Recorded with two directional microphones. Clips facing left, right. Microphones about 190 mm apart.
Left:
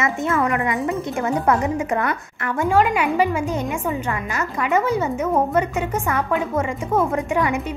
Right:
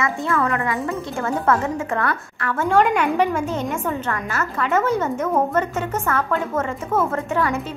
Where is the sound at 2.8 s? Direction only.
5° left (ahead or behind).